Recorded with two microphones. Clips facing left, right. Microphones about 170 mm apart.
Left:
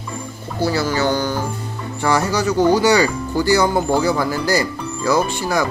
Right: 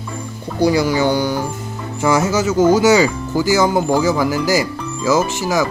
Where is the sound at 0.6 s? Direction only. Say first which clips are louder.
Right 4 dB; 15° right (ahead or behind).